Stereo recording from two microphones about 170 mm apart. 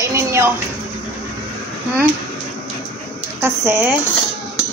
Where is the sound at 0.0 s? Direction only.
15° right (ahead or behind).